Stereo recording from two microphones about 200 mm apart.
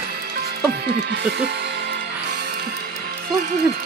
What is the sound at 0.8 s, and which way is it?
Music, 55° right (ahead or behind).